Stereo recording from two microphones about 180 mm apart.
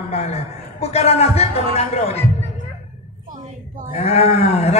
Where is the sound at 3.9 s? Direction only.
35° left (ahead or behind).